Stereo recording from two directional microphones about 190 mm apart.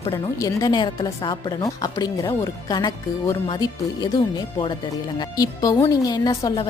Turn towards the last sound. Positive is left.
turn(degrees=20)  # may be behind; listen again after turning